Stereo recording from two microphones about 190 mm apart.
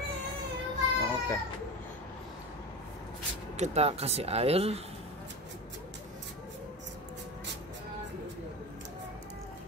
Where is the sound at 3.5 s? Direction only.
35° right (ahead or behind).